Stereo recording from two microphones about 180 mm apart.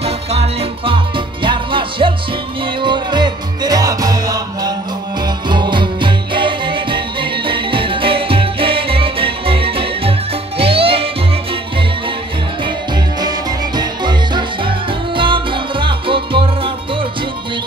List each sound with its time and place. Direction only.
0.0 s music: 35° right (ahead or behind)
13.7 s music: 25° right (ahead or behind)